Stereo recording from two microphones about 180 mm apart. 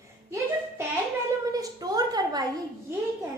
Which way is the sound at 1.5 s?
20° right (ahead or behind).